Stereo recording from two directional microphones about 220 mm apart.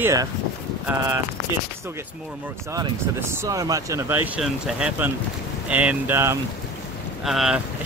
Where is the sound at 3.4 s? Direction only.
15° right (ahead or behind).